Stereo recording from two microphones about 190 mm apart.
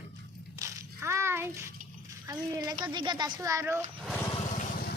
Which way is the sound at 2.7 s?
25° right (ahead or behind).